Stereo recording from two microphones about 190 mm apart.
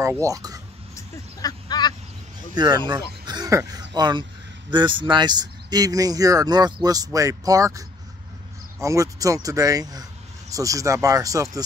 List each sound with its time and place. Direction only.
0.2 s speech: 20° right (ahead or behind)
0.9 s a sound: 20° left (ahead or behind)
2.5 s speech: 20° right (ahead or behind)
3.3 s throat clearing: 20° right (ahead or behind)
4.6 s speech: 25° right (ahead or behind)
8.8 s speech: 15° right (ahead or behind)